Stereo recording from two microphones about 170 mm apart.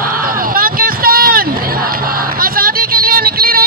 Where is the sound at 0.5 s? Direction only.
60° right (ahead or behind).